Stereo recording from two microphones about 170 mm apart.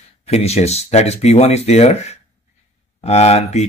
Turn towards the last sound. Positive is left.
turn(degrees=40)  # may be behind; listen again after turning